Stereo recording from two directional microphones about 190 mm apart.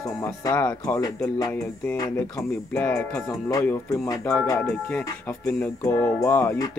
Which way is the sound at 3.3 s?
15° left (ahead or behind).